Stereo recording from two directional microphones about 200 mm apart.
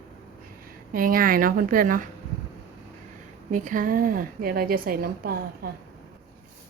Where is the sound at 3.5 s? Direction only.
40° right (ahead or behind).